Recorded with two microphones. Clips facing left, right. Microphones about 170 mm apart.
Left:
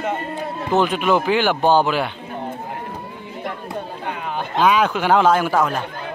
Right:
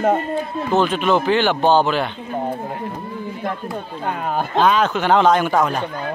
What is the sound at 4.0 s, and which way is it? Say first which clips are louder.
Speech: right 7 dB; 45° right (ahead or behind).